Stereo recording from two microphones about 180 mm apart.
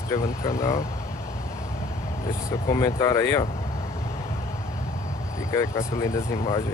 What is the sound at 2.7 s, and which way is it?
Speech, 20° left (ahead or behind).